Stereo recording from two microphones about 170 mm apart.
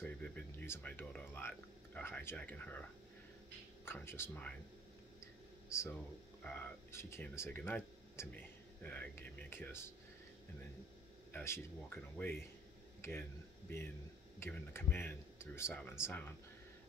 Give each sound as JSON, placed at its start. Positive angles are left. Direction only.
{"t": 0.0, "sound": "speech", "side_deg": 10}
{"t": 5.7, "sound": "speech", "side_deg": 15}
{"t": 11.3, "sound": "speech", "side_deg": 15}
{"t": 14.4, "sound": "speech", "side_deg": 15}